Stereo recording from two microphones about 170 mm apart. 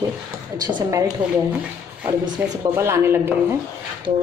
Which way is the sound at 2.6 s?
15° right (ahead or behind).